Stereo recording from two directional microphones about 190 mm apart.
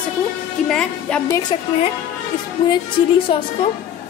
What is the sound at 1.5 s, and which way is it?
Speech, 30° left (ahead or behind).